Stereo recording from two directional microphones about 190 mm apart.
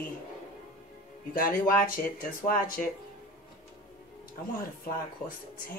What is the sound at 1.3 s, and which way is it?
A woman's voice, 45° left (ahead or behind).